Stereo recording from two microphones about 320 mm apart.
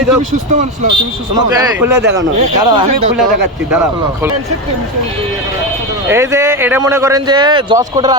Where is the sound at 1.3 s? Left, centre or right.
Centre.